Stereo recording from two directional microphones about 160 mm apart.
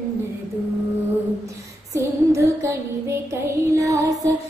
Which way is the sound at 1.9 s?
20° right (ahead or behind).